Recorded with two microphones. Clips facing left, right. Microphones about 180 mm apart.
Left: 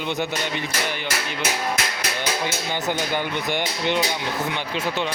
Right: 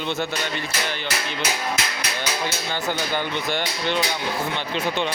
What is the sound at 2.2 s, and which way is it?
Speech, 15° left (ahead or behind).